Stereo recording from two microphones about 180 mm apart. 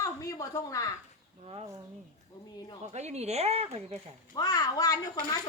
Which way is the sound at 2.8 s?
40° right (ahead or behind).